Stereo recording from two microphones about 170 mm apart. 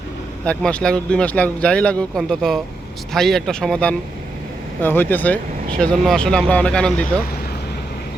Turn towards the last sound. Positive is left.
turn(degrees=5)  # may be behind; listen again after turning